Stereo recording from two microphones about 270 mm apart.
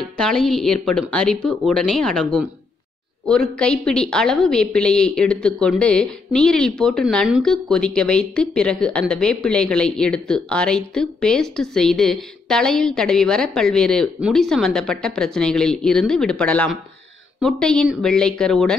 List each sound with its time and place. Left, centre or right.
0.0 s a woman's voice: centre